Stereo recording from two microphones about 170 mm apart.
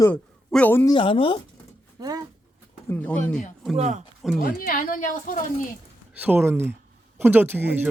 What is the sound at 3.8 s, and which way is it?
Speech, 45° right (ahead or behind).